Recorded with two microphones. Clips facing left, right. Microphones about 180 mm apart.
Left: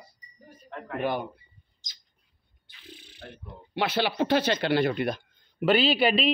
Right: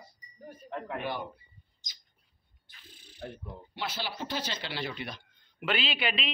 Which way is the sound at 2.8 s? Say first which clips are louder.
Right 2 dB; 75° left (ahead or behind).